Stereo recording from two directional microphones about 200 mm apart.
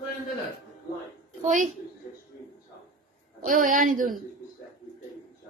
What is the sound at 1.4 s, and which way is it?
Speech, 40° right (ahead or behind).